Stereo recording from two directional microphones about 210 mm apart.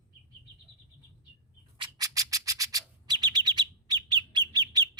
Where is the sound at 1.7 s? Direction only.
20° right (ahead or behind).